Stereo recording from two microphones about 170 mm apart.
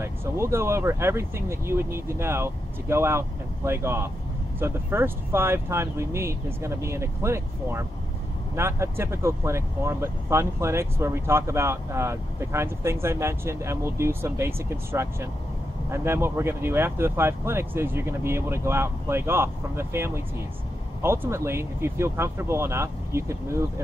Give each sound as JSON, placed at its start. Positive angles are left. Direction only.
{"t": 0.0, "sound": "speech", "side_deg": -15}